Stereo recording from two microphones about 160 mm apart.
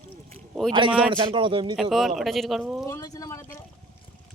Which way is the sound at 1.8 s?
Centre (ahead or behind).